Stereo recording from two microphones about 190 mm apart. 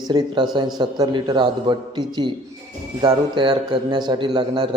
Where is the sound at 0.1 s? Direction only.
25° right (ahead or behind).